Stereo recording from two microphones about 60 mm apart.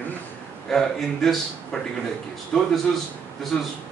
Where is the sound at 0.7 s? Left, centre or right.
Centre.